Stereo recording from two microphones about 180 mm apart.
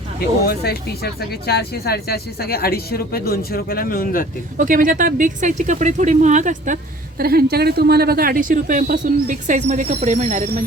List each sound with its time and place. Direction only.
0.4 s speech: 60° left (ahead or behind)
4.5 s speech: 50° right (ahead or behind)
7.2 s speech: 60° right (ahead or behind)